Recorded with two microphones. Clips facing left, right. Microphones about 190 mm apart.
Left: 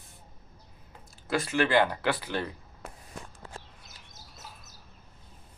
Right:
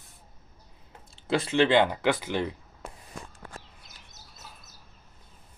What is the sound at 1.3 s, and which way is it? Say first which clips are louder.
Speech: right 4 dB; 25° right (ahead or behind).